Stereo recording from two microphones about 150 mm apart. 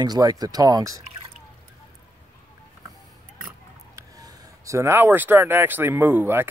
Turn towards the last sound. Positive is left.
turn(degrees=-15)  # may be behind; listen again after turning